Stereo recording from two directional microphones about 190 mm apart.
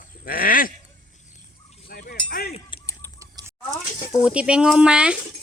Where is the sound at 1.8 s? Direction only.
50° left (ahead or behind).